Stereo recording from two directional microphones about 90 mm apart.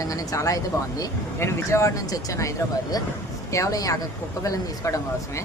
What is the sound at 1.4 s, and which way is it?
Speech, 30° left (ahead or behind).